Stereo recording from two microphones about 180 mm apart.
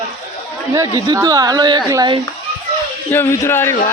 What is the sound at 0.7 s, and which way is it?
Speech, 20° right (ahead or behind).